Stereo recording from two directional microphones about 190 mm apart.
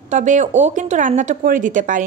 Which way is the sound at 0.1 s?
40° right (ahead or behind).